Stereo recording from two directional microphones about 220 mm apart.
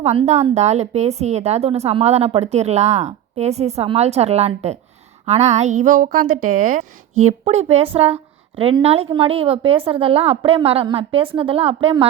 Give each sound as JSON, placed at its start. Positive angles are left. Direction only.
{"t": 0.0, "sound": "a woman's voice", "side_deg": -30}